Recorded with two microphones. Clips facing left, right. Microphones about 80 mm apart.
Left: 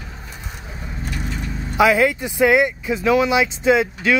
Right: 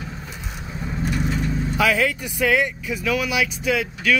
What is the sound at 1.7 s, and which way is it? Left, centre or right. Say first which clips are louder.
Speech: left 6 dB; left.